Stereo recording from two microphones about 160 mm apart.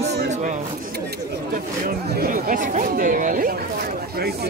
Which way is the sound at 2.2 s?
55° right (ahead or behind).